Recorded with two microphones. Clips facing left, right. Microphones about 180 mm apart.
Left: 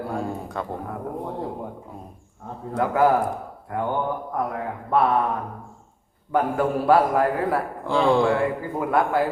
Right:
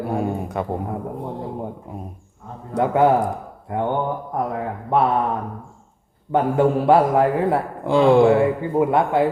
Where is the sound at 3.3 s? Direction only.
20° right (ahead or behind).